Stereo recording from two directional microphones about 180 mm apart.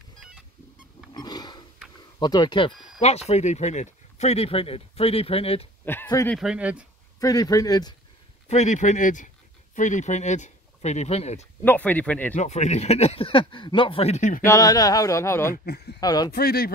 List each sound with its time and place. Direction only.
1.1 s a sound: 20° left (ahead or behind)
2.1 s a man's voice: 25° left (ahead or behind)
3.0 s speech: 35° left (ahead or behind)
5.9 s speech: 15° left (ahead or behind)
6.3 s speech: 5° right (ahead or behind)
7.2 s a man's voice: 20° left (ahead or behind)
8.5 s speech: 40° left (ahead or behind)
11.6 s speech: 10° left (ahead or behind)
12.4 s speech: 40° left (ahead or behind)
14.4 s speech: 20° left (ahead or behind)
15.5 s speech: 60° left (ahead or behind)
16.0 s a man's voice: 20° left (ahead or behind)
16.3 s speech: 60° left (ahead or behind)